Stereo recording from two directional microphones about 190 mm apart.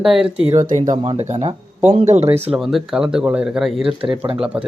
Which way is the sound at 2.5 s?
Centre (ahead or behind).